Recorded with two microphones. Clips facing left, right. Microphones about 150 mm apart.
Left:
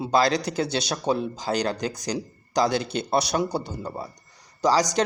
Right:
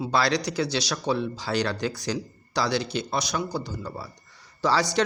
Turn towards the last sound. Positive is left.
turn(degrees=40)  # may be behind; listen again after turning